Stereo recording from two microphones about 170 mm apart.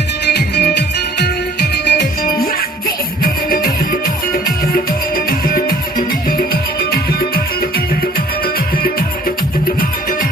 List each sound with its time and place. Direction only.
0.3 s music: 75° left (ahead or behind)
3.2 s music: 60° left (ahead or behind)